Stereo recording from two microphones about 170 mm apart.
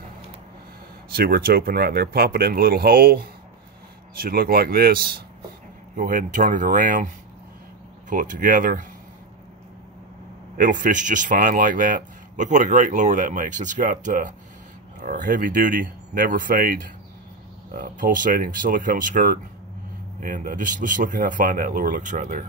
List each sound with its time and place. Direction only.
1.1 s speech: 60° right (ahead or behind)
5.9 s speech: 50° right (ahead or behind)
8.1 s speech: 50° right (ahead or behind)
10.6 s speech: 50° right (ahead or behind)